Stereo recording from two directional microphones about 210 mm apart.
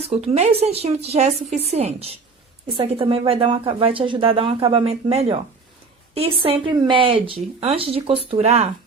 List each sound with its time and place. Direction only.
0.1 s a woman's voice: 30° right (ahead or behind)